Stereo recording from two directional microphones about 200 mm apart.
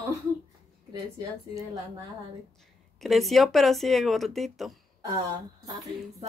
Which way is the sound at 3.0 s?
Centre (ahead or behind).